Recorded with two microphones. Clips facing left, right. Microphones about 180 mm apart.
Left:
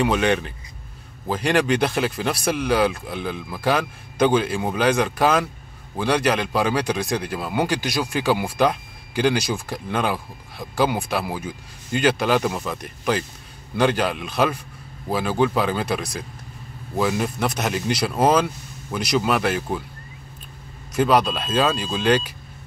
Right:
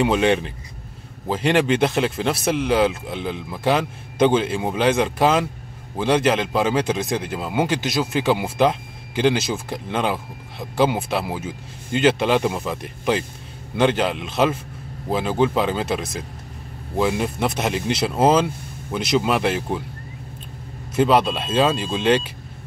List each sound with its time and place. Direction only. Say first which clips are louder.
0.0 s speech: right 2 dB; 25° right (ahead or behind)
20.9 s speech: right 1 dB; 25° right (ahead or behind)